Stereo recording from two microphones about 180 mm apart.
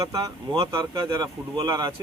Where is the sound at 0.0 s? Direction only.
20° right (ahead or behind).